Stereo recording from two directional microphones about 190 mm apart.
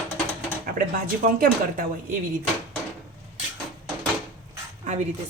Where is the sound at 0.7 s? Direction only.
50° right (ahead or behind).